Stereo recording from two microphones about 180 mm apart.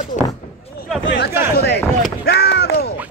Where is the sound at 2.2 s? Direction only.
65° left (ahead or behind).